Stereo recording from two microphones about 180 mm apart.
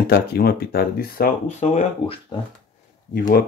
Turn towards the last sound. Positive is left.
turn(degrees=55)  # may be behind; listen again after turning